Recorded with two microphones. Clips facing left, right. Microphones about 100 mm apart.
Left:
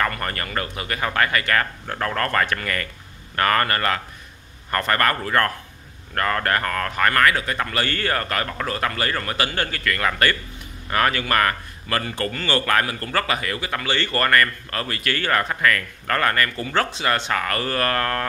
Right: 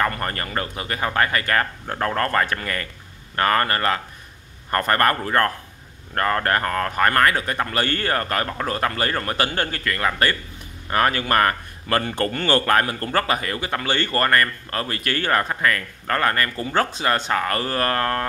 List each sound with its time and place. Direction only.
0.0 s speech: 30° right (ahead or behind)
13.8 s speech: 45° right (ahead or behind)
14.1 s speech: 30° right (ahead or behind)